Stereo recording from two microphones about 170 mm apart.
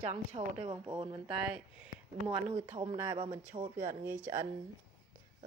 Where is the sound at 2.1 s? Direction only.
30° right (ahead or behind).